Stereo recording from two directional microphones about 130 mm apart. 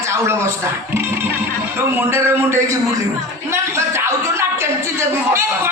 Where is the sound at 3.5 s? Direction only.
20° right (ahead or behind).